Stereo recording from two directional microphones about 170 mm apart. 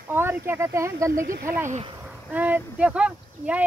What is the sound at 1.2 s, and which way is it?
Speech, 55° right (ahead or behind).